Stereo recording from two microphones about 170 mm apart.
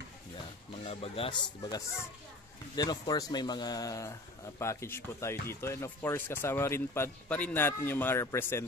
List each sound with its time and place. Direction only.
0.8 s speech: 35° left (ahead or behind); by 8.6 s 15° left (ahead or behind)